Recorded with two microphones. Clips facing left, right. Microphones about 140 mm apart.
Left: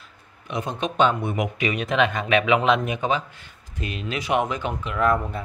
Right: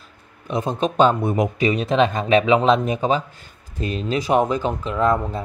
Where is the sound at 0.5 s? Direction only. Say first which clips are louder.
Right 5 dB; 35° right (ahead or behind).